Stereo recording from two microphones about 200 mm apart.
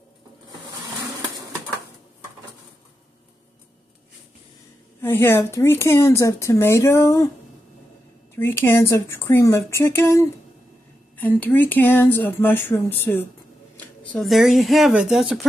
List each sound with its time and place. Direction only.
5.0 s speech: 10° left (ahead or behind)
8.4 s speech: 10° left (ahead or behind)